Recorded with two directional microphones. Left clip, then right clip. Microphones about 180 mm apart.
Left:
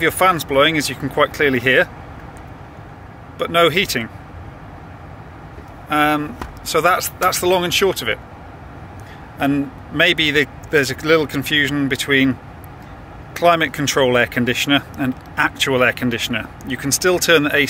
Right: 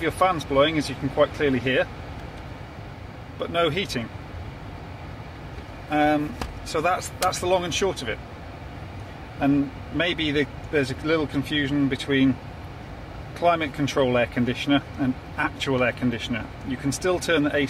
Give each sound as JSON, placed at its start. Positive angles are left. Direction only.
{"t": 0.0, "sound": "speech", "side_deg": 25}
{"t": 3.3, "sound": "speech", "side_deg": 25}
{"t": 5.9, "sound": "speech", "side_deg": 25}
{"t": 9.4, "sound": "speech", "side_deg": 20}
{"t": 13.3, "sound": "speech", "side_deg": 20}